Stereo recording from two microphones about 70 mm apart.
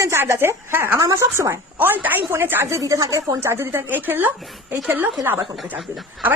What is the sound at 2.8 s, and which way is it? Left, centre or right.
Speech, right.